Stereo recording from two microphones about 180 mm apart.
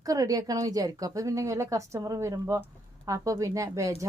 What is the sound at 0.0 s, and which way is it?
A woman's voice, 20° right (ahead or behind).